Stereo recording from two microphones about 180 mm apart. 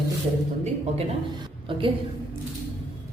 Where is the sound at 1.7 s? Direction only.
30° right (ahead or behind).